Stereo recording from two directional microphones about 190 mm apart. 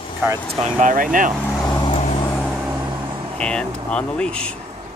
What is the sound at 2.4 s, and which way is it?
Vehicle, centre (ahead or behind).